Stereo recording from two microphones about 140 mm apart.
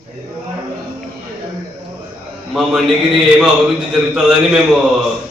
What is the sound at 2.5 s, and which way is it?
Speech, 5° right (ahead or behind).